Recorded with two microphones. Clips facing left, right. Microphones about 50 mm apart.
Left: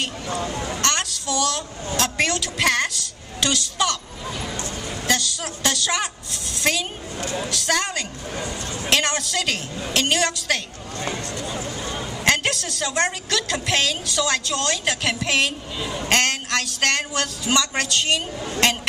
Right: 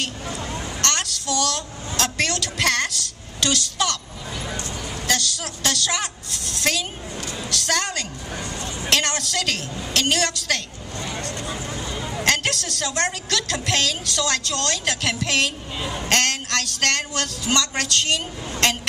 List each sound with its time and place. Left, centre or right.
0.6 s a sound: left
0.8 s child singing: centre
2.0 s a sound: centre
5.0 s a woman's voice: centre
7.2 s a sound: left
7.4 s a woman's voice: centre
12.2 s a woman's voice: centre
15.8 s a man's voice: centre
16.1 s a woman's voice: centre